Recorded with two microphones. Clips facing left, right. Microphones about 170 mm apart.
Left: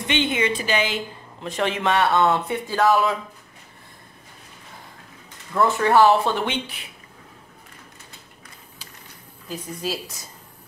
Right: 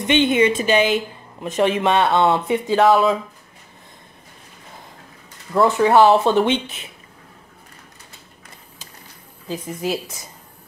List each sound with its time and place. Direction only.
0.0 s speech: 20° right (ahead or behind)
5.6 s speech: 15° right (ahead or behind)
9.5 s speech: 20° right (ahead or behind)